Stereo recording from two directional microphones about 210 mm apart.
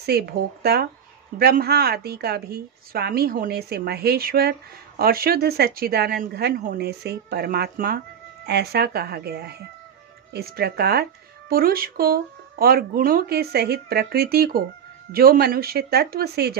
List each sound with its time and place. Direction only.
0.0 s a woman's voice: 50° right (ahead or behind)